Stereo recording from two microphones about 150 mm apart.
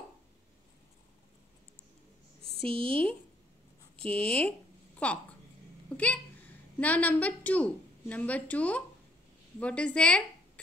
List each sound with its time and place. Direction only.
2.6 s a woman's voice: 35° right (ahead or behind)
4.0 s a woman's voice: 5° left (ahead or behind)